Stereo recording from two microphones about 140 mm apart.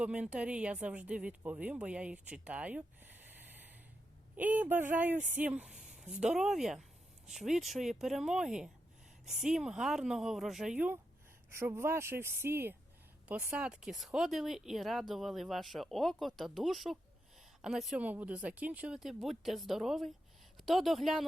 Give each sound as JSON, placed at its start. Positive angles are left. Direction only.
{"t": 0.0, "sound": "speech", "side_deg": -10}